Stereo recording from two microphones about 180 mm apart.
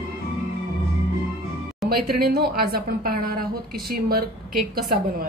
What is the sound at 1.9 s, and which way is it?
A woman's voice, 60° right (ahead or behind).